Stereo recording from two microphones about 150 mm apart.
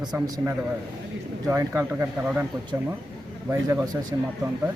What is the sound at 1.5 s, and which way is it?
Speech, 15° right (ahead or behind).